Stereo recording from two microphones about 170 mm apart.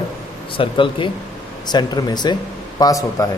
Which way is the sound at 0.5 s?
30° left (ahead or behind).